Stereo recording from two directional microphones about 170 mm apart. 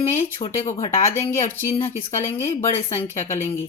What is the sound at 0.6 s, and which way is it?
Speech, 15° left (ahead or behind).